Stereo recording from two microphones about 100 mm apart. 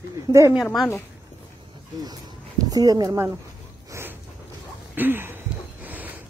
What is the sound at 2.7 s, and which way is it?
Speech, 40° right (ahead or behind).